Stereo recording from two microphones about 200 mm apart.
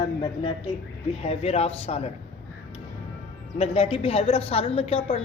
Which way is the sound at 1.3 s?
30° left (ahead or behind).